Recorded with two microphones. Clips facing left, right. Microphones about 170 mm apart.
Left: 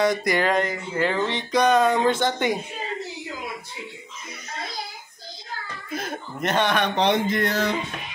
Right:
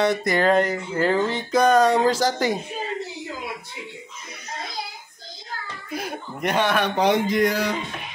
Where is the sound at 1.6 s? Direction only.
40° right (ahead or behind).